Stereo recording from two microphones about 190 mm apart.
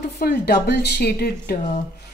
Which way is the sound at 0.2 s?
55° left (ahead or behind).